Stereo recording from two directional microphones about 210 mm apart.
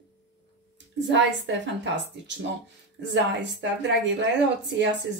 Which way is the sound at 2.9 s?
55° right (ahead or behind).